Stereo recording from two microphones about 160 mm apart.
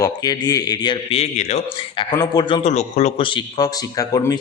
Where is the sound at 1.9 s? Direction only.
25° left (ahead or behind).